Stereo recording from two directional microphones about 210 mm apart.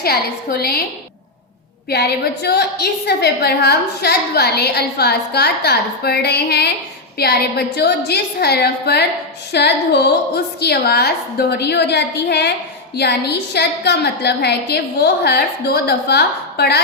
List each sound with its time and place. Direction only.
0.0 s a woman's voice: 45° left (ahead or behind)
1.9 s a woman's voice: 50° left (ahead or behind)